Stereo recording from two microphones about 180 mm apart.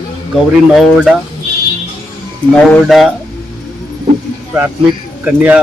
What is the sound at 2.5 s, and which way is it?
Speech, 5° left (ahead or behind).